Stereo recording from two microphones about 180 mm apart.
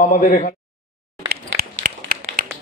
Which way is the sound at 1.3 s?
55° right (ahead or behind).